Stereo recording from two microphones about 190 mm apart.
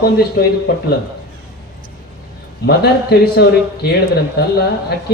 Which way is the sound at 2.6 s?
60° left (ahead or behind).